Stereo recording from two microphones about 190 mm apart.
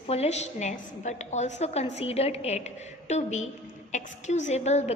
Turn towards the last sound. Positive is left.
turn(degrees=35)  # may be behind; listen again after turning